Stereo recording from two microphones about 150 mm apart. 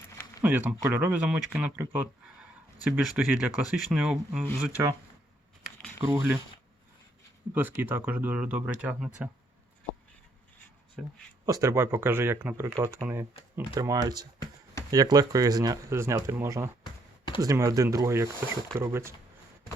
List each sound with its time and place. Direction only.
0.4 s speech: 10° right (ahead or behind)
6.0 s speech: 15° right (ahead or behind)
7.5 s speech: 10° right (ahead or behind)
11.0 s speech: centre (ahead or behind)
11.4 s speech: 20° right (ahead or behind)
16.8 s a sound: 30° left (ahead or behind)
17.4 s speech: 20° right (ahead or behind)